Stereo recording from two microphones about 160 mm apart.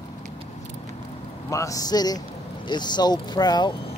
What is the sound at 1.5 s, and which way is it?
Speech, 20° left (ahead or behind).